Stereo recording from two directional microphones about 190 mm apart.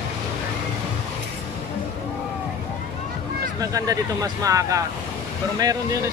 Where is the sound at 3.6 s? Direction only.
20° right (ahead or behind).